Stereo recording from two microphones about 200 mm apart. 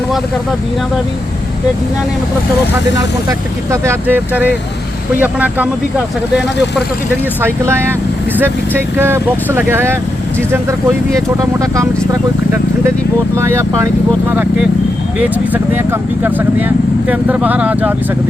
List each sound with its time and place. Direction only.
3.2 s speech: 10° right (ahead or behind)
8.4 s speech: 10° right (ahead or behind)